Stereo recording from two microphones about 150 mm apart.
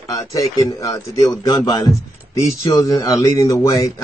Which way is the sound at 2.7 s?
20° left (ahead or behind).